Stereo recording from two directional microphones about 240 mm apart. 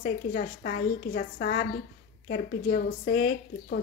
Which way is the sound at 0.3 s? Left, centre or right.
Left.